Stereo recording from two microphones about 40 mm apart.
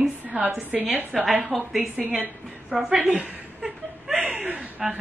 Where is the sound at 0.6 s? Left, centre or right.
Right.